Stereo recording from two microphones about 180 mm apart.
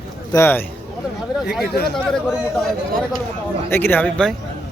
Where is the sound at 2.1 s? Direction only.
Centre (ahead or behind).